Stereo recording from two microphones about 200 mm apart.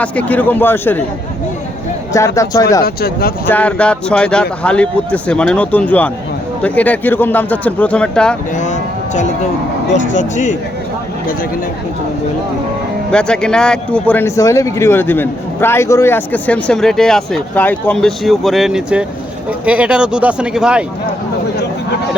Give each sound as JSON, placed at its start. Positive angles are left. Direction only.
{"t": 0.0, "sound": "speech", "side_deg": 5}
{"t": 2.1, "sound": "speech", "side_deg": 15}
{"t": 2.8, "sound": "speech", "side_deg": 50}
{"t": 3.5, "sound": "speech", "side_deg": 5}
{"t": 8.5, "sound": "speech", "side_deg": 35}
{"t": 13.1, "sound": "speech", "side_deg": 5}